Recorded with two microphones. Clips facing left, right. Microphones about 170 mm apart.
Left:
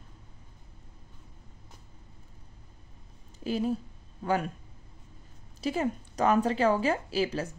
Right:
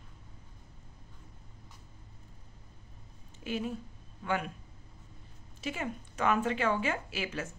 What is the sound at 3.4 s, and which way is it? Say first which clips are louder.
A woman's voice: left 6 dB; 35° left (ahead or behind).